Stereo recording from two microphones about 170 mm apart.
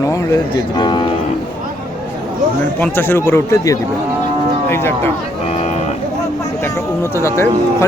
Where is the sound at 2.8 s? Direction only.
10° left (ahead or behind).